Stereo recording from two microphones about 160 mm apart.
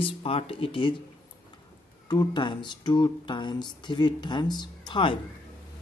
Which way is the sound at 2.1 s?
25° left (ahead or behind).